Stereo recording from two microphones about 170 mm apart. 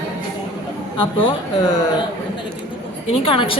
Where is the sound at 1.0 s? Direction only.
30° left (ahead or behind).